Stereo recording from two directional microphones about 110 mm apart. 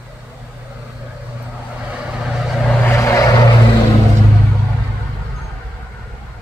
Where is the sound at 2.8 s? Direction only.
25° left (ahead or behind).